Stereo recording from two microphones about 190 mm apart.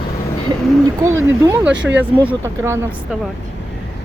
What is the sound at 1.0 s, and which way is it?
Speech, 15° right (ahead or behind).